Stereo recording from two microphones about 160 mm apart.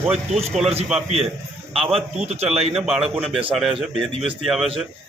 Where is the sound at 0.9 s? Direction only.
40° right (ahead or behind).